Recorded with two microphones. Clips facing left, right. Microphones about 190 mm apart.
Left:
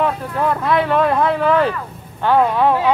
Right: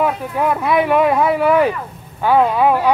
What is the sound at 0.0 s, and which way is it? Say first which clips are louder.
Speech: right 1 dB; 10° right (ahead or behind).